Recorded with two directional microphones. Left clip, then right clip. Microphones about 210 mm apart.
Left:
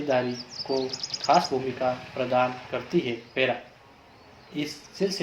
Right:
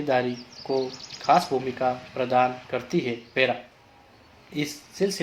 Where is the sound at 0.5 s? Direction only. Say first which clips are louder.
Right 1 dB; 45° left (ahead or behind).